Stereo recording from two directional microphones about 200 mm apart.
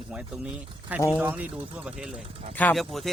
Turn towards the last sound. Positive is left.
turn(degrees=0)  # may be behind; listen again after turning